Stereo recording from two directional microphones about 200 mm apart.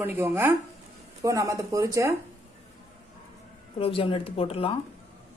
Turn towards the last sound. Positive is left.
turn(degrees=30)  # may be behind; listen again after turning